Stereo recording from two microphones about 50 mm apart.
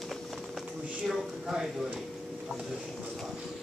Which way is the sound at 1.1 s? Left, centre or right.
Centre.